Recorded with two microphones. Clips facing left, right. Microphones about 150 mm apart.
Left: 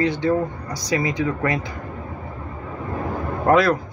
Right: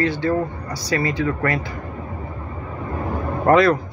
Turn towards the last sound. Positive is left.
turn(degrees=5)  # may be behind; listen again after turning